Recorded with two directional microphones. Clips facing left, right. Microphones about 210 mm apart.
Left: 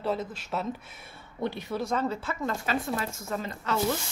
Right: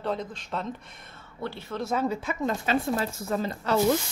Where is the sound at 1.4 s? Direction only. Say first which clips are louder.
Left 3 dB; 15° left (ahead or behind).